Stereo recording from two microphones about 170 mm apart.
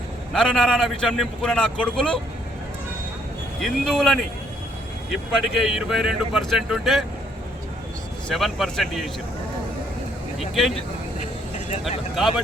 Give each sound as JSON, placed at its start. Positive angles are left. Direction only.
{"t": 0.3, "sound": "speech", "side_deg": 5}
{"t": 3.6, "sound": "speech", "side_deg": 0}
{"t": 8.3, "sound": "speech", "side_deg": 0}
{"t": 10.5, "sound": "speech", "side_deg": 0}
{"t": 11.2, "sound": "vehicle", "side_deg": 45}